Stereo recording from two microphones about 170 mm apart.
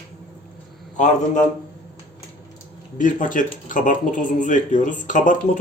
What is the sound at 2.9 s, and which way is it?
Speech, 50° left (ahead or behind).